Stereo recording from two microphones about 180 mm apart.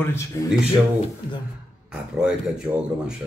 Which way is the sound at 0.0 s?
15° left (ahead or behind).